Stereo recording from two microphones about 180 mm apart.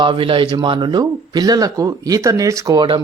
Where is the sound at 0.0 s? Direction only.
30° right (ahead or behind).